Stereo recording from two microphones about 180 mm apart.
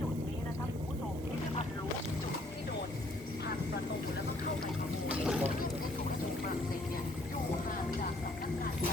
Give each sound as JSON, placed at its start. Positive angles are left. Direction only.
{"t": 5.2, "sound": "mechanisms", "side_deg": -5}